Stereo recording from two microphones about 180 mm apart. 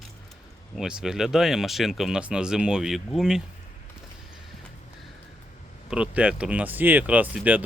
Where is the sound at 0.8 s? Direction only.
5° right (ahead or behind).